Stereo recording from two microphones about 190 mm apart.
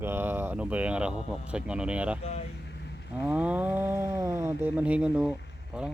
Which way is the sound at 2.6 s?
65° left (ahead or behind).